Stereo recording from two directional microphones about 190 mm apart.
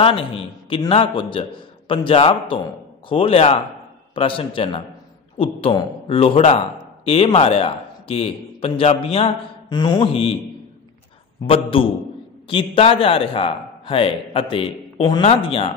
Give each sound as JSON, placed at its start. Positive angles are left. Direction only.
{"t": 0.0, "sound": "a man's voice", "side_deg": 30}
{"t": 11.4, "sound": "a man's voice", "side_deg": 30}